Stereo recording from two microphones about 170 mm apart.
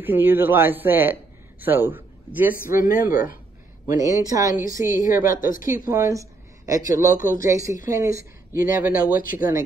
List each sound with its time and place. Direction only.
0.0 s a man's voice: 10° right (ahead or behind)
2.5 s speech: 55° left (ahead or behind)
4.0 s speech: 20° right (ahead or behind)
4.9 s speech: 50° left (ahead or behind)
5.9 s speech: 20° right (ahead or behind)
7.2 s speech: 50° left (ahead or behind)
7.4 s speech: 20° right (ahead or behind)
9.0 s speech: 55° left (ahead or behind)